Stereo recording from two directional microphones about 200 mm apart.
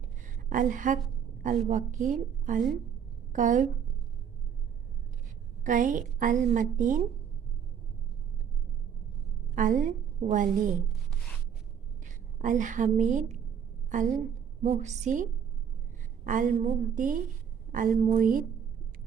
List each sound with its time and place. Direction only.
0.5 s a woman's voice: 40° right (ahead or behind)
5.6 s a woman's voice: 40° right (ahead or behind)
9.6 s a woman's voice: 40° right (ahead or behind)
12.0 s a woman's voice: 40° right (ahead or behind)
14.6 s a woman's voice: 35° right (ahead or behind)